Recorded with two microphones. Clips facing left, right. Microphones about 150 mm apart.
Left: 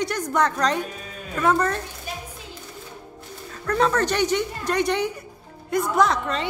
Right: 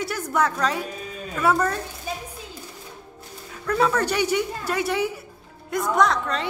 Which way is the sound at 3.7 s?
5° right (ahead or behind).